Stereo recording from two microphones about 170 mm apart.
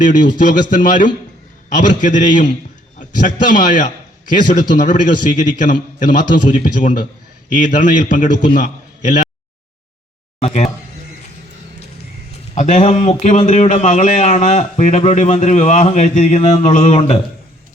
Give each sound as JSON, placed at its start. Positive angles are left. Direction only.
{"t": 0.0, "sound": "a man's voice", "side_deg": 50}
{"t": 10.4, "sound": "speech", "side_deg": 40}
{"t": 12.5, "sound": "a man's voice", "side_deg": 45}